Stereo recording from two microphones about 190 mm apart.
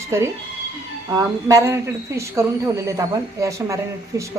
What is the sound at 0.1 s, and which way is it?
A woman's voice, 15° right (ahead or behind).